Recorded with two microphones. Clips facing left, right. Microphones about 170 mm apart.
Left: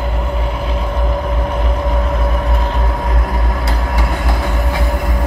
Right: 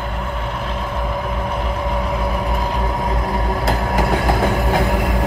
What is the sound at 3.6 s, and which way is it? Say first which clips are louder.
Vehicle: right 2 dB; 50° right (ahead or behind).